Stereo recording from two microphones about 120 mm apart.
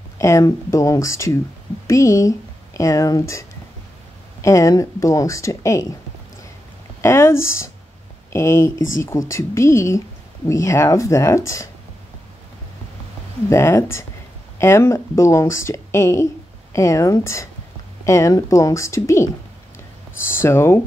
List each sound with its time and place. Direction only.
0.2 s speech: 25° left (ahead or behind)
7.0 s speech: 20° left (ahead or behind)
13.5 s speech: 20° left (ahead or behind)
20.3 s speech: 20° left (ahead or behind)